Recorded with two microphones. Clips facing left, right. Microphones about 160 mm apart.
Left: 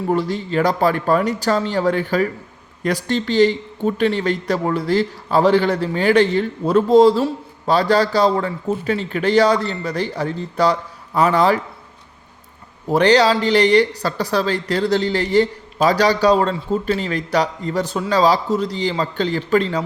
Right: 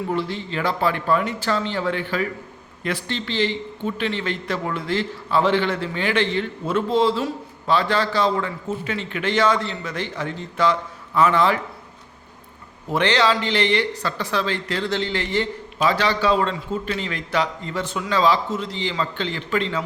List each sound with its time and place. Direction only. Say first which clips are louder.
0.1 s speech: left 6 dB; 40° left (ahead or behind)
12.9 s speech: left 6 dB; 40° left (ahead or behind)